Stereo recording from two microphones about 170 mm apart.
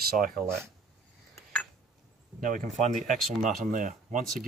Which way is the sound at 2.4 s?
50° right (ahead or behind).